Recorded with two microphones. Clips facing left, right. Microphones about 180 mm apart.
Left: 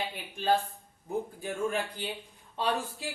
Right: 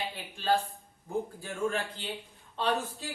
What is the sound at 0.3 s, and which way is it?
Speech, 20° left (ahead or behind).